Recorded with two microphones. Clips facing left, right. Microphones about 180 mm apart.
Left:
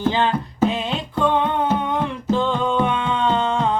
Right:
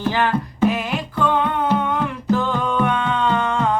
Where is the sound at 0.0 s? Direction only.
20° left (ahead or behind).